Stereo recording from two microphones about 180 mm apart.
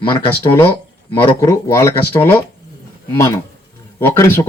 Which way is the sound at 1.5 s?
15° left (ahead or behind).